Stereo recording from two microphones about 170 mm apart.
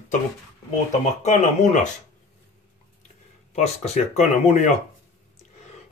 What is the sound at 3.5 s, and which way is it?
Speech, 40° left (ahead or behind).